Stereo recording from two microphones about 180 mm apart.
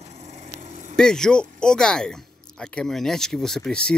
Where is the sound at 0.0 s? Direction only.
40° right (ahead or behind).